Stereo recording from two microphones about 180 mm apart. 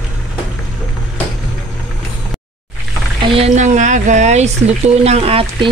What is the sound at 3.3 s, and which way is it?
Speech, 40° right (ahead or behind).